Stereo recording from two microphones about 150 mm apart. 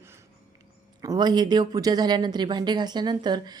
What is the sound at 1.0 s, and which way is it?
Speech, 25° right (ahead or behind).